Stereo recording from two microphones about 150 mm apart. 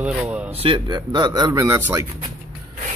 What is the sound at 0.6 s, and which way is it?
Speech, 35° right (ahead or behind).